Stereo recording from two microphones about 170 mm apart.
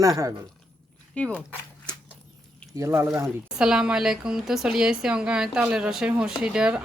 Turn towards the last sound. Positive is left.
turn(degrees=-5)  # may be behind; listen again after turning